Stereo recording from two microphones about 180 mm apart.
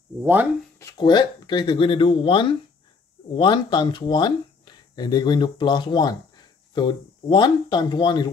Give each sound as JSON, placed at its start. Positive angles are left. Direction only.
{"t": 0.2, "sound": "speech", "side_deg": -10}
{"t": 0.7, "sound": "speech", "side_deg": 20}